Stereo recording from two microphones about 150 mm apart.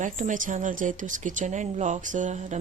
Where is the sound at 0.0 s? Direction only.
55° right (ahead or behind).